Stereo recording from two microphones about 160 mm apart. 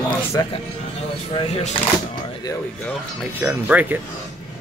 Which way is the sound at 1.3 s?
40° left (ahead or behind).